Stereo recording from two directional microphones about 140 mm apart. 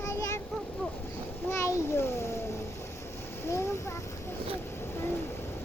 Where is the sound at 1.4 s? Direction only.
20° left (ahead or behind).